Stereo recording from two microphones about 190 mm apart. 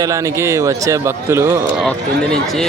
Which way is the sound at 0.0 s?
15° right (ahead or behind).